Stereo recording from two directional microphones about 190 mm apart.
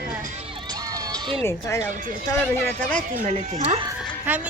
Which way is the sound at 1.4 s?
15° left (ahead or behind).